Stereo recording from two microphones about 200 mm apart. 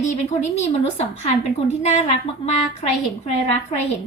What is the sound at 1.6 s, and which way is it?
Speech, 35° left (ahead or behind).